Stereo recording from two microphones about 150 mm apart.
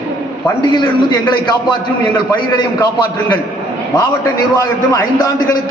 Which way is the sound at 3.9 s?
30° left (ahead or behind).